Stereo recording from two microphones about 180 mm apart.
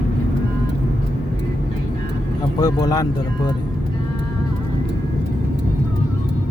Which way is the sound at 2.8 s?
20° left (ahead or behind).